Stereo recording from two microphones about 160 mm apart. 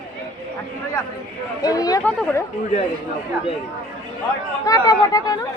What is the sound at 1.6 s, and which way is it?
Speech, 20° left (ahead or behind).